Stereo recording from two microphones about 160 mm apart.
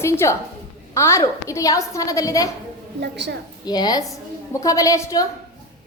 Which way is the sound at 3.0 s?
90° right.